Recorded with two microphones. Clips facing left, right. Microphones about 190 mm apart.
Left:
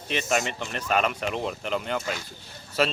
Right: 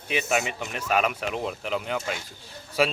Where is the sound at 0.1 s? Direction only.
5° right (ahead or behind).